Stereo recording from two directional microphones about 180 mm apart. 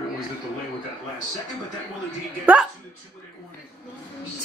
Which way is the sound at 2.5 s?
10° right (ahead or behind).